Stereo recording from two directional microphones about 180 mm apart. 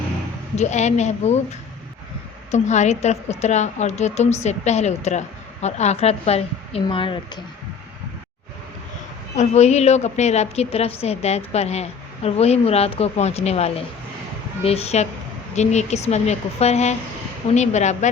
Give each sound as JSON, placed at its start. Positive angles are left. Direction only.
{"t": 0.5, "sound": "a woman's voice", "side_deg": 40}
{"t": 2.5, "sound": "a woman's voice", "side_deg": 40}
{"t": 9.4, "sound": "a woman's voice", "side_deg": 35}